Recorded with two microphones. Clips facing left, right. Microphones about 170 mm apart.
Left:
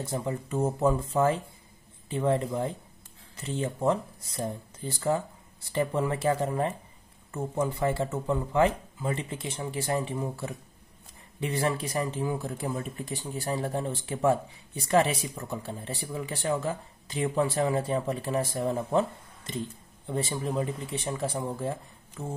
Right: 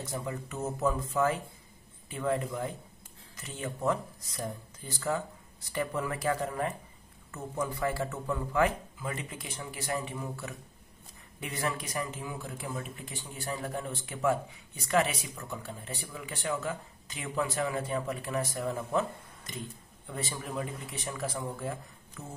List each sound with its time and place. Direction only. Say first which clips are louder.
0.0 s a man's voice: left 5 dB; 30° left (ahead or behind)